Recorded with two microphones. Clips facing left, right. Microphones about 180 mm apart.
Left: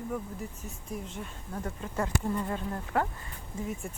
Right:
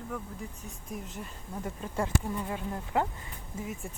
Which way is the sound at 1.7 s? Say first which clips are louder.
Right 1 dB; 10° right (ahead or behind).